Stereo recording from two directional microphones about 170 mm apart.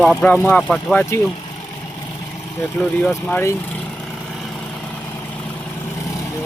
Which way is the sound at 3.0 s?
10° left (ahead or behind).